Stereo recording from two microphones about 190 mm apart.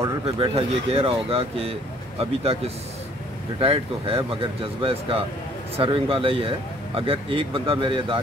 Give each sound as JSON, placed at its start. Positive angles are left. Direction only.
{"t": 0.2, "sound": "speech", "side_deg": -30}